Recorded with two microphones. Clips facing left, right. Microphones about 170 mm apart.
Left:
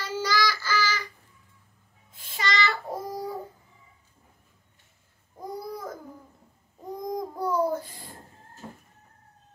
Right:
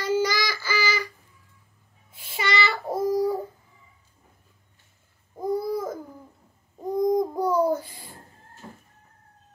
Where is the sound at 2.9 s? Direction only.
40° right (ahead or behind).